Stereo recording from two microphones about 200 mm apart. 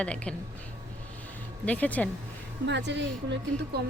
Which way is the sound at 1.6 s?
5° left (ahead or behind).